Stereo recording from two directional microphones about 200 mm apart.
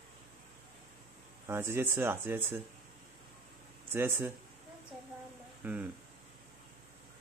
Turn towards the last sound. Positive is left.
turn(degrees=-10)  # may be behind; listen again after turning